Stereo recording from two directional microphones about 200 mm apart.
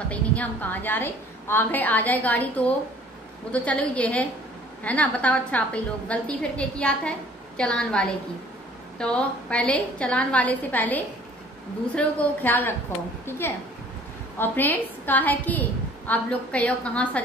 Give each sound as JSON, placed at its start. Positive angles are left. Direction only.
{"t": 0.1, "sound": "a woman's voice", "side_deg": 5}